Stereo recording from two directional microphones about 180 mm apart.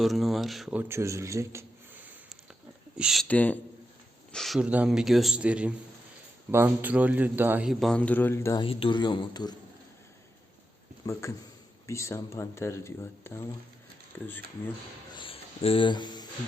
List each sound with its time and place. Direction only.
0.0 s a man's voice: centre (ahead or behind)
3.2 s a man's voice: 10° left (ahead or behind)
8.6 s a man's voice: 30° left (ahead or behind)
11.0 s a man's voice: 15° left (ahead or behind)
15.1 s a sound: 30° left (ahead or behind)